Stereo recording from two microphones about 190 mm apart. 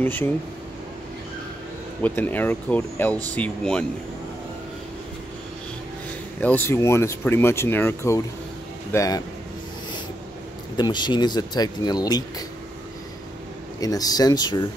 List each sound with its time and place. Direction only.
0.0 s speech: 10° left (ahead or behind)
2.0 s speech: 10° left (ahead or behind)
6.4 s speech: 10° left (ahead or behind)
10.8 s speech: 25° left (ahead or behind)
13.7 s speech: 20° left (ahead or behind)